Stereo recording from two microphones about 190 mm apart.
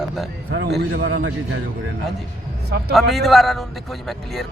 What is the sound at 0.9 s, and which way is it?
Speech, 80° right.